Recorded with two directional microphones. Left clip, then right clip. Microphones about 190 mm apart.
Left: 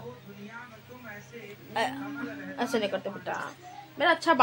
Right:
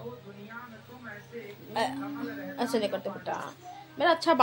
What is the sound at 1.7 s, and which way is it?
A woman's voice, 5° left (ahead or behind).